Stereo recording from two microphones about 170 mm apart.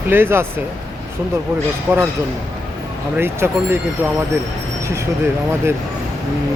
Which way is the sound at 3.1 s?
15° right (ahead or behind).